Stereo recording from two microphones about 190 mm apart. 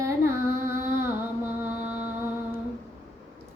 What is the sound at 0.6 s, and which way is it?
Music, 15° right (ahead or behind).